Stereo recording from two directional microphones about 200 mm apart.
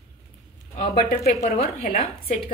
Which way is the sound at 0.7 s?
50° left (ahead or behind).